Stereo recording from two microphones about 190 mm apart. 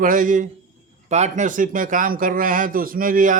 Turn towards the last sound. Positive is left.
turn(degrees=-45)  # may be behind; listen again after turning